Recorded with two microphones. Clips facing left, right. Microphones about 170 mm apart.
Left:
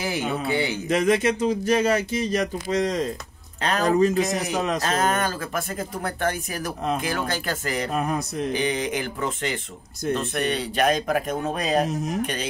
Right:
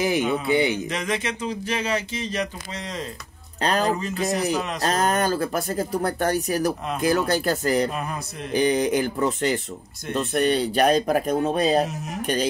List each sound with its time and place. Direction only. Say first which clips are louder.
0.0 s a man's voice: right 4 dB; 20° right (ahead or behind)
0.8 s speech: left 7 dB; 45° left (ahead or behind)
3.6 s speech: left 3 dB; 35° right (ahead or behind)
7.9 s speech: left 5 dB; 45° left (ahead or behind)
8.5 s speech: right 9 dB; 40° right (ahead or behind)